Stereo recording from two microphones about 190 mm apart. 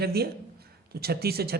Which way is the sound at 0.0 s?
55° right (ahead or behind).